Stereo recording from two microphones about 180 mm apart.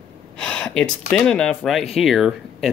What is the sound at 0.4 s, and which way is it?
Gasp, 5° left (ahead or behind).